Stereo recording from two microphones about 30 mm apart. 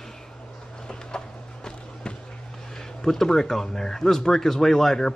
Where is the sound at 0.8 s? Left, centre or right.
Left.